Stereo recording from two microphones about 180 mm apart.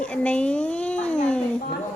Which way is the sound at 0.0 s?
5° left (ahead or behind).